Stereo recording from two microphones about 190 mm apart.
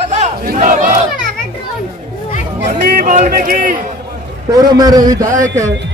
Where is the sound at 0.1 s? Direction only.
45° right (ahead or behind).